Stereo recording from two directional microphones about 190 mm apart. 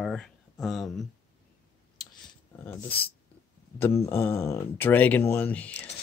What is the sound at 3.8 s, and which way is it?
Speech, 15° left (ahead or behind).